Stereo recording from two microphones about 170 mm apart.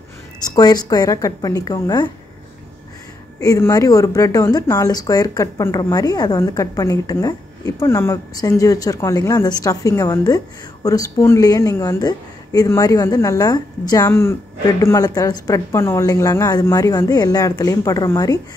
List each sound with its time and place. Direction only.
0.4 s speech: 25° left (ahead or behind)
3.3 s speech: 20° left (ahead or behind)